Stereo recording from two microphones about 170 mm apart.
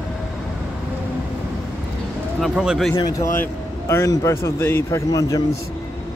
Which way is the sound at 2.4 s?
Centre (ahead or behind).